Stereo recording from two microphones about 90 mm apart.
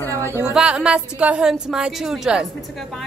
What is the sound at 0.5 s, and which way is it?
A woman's voice, 10° right (ahead or behind).